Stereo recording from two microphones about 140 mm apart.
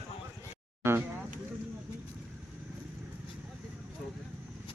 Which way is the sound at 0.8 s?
15° right (ahead or behind).